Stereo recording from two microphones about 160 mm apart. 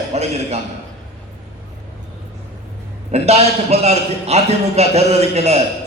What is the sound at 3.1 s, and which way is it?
A man's voice, 40° right (ahead or behind).